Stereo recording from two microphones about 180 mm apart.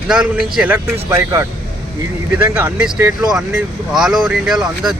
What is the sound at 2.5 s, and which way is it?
Speech, 10° right (ahead or behind).